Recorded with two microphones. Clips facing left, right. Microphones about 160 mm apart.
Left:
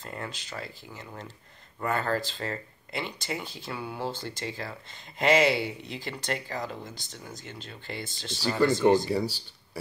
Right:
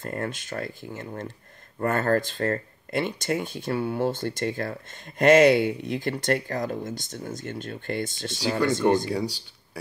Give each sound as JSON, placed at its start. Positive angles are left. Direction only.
{"t": 0.0, "sound": "speech", "side_deg": -50}
{"t": 8.5, "sound": "speech", "side_deg": 5}